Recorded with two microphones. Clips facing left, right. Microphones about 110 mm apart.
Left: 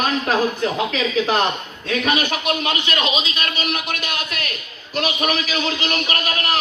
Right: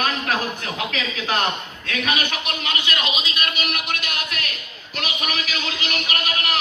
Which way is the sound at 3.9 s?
40° left (ahead or behind).